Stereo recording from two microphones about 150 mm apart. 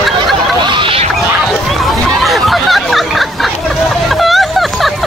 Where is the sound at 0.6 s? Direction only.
30° right (ahead or behind).